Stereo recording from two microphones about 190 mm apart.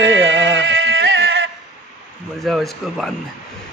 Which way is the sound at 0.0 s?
75° right (ahead or behind).